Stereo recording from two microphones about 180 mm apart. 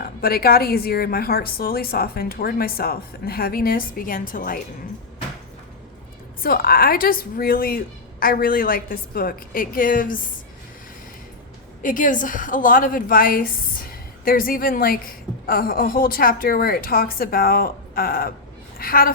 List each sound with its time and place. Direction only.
0.0 s a woman's voice: 55° left (ahead or behind)
6.4 s a woman's voice: 55° left (ahead or behind)
11.8 s a woman's voice: 50° left (ahead or behind)